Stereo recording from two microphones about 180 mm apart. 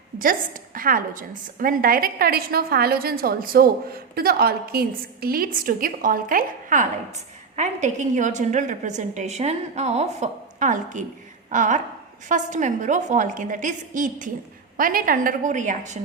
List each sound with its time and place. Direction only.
0.2 s a woman's voice: 50° right (ahead or behind)